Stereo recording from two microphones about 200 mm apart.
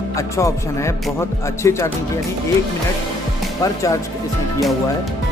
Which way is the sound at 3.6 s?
15° left (ahead or behind).